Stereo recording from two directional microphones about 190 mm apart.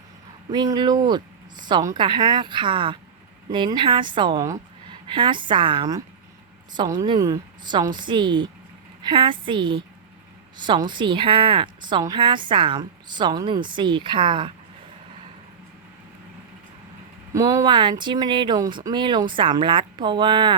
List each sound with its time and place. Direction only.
0.5 s a woman's voice: 20° right (ahead or behind)
17.3 s a woman's voice: 15° right (ahead or behind)